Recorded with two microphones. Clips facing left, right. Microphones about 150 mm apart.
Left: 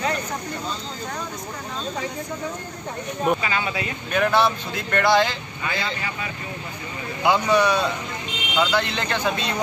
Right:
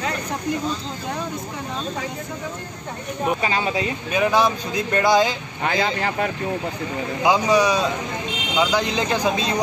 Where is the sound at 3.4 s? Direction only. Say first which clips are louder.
Right 4 dB; 30° right (ahead or behind).